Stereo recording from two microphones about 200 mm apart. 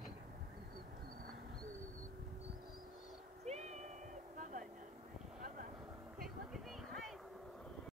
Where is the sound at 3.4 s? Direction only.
35° right (ahead or behind).